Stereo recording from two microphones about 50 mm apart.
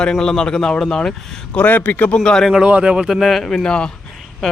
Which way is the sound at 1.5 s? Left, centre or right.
Left.